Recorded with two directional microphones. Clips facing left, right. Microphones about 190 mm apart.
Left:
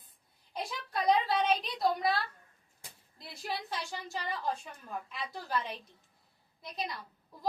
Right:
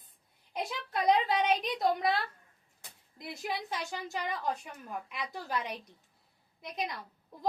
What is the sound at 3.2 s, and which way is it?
A woman's voice, 15° right (ahead or behind).